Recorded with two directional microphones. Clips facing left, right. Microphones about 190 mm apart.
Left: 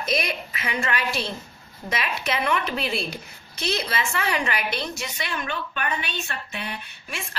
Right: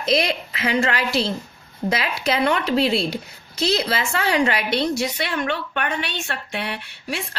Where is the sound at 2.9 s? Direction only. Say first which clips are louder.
Right 7 dB; 70° right (ahead or behind).